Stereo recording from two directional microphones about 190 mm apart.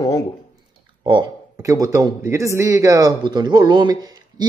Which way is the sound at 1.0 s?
25° right (ahead or behind).